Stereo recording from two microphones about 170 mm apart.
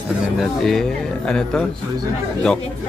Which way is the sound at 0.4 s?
Centre (ahead or behind).